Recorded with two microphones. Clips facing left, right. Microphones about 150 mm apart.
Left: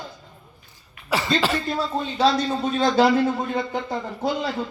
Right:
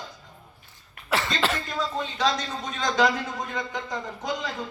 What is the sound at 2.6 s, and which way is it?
Speech, 30° left (ahead or behind).